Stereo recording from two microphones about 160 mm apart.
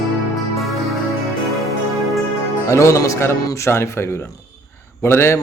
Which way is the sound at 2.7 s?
20° left (ahead or behind).